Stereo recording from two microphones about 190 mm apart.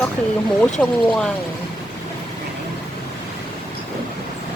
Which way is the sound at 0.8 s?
10° left (ahead or behind).